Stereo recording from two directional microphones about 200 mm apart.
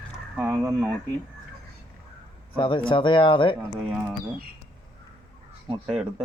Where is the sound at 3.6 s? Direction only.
5° right (ahead or behind).